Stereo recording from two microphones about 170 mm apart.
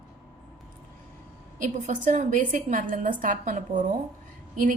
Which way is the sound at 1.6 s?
45° right (ahead or behind).